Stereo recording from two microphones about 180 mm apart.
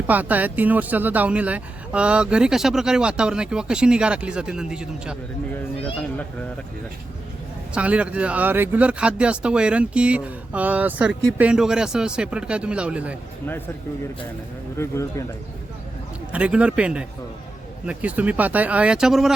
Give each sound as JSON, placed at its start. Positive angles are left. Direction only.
{"t": 0.1, "sound": "speech", "side_deg": -10}
{"t": 7.7, "sound": "speech", "side_deg": -5}
{"t": 14.8, "sound": "speech", "side_deg": 15}
{"t": 16.3, "sound": "speech", "side_deg": -5}